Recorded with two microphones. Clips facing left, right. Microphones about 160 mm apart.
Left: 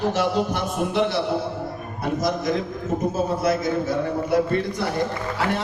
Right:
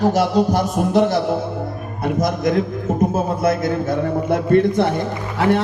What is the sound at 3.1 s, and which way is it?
A man's voice, 55° right (ahead or behind).